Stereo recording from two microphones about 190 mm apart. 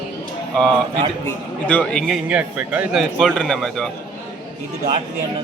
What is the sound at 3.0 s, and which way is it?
Speech, 5° left (ahead or behind).